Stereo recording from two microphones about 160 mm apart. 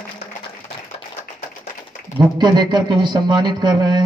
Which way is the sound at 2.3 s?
25° right (ahead or behind).